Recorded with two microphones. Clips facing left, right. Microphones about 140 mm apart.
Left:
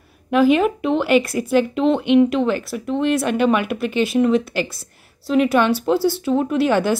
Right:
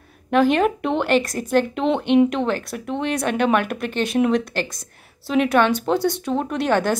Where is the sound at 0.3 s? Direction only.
5° left (ahead or behind).